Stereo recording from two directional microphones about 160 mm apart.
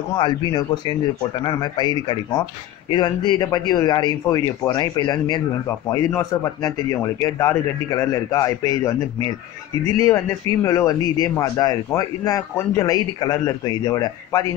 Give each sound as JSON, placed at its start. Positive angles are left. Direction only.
{"t": 0.1, "sound": "speech", "side_deg": 30}